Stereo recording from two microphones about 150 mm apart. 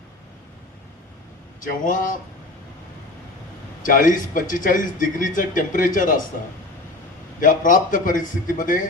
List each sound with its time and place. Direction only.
1.6 s speech: 60° left (ahead or behind)
3.8 s speech: 60° left (ahead or behind)
7.4 s speech: 60° left (ahead or behind)